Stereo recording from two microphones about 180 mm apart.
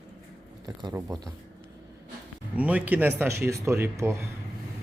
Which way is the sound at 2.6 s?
10° right (ahead or behind).